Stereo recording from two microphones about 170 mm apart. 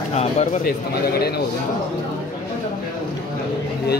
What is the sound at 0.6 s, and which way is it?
Speech, 65° left (ahead or behind).